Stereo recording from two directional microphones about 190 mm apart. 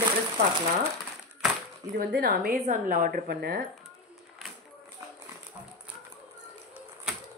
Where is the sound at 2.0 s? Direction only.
50° right (ahead or behind).